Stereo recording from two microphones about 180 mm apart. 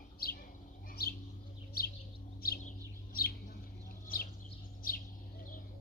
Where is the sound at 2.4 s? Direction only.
55° left (ahead or behind).